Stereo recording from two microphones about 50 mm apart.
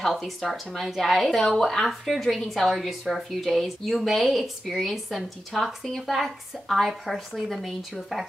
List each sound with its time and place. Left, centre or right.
0.0 s speech: centre